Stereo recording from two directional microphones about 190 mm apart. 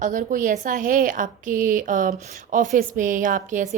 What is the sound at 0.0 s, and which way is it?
A woman's voice, 45° right (ahead or behind).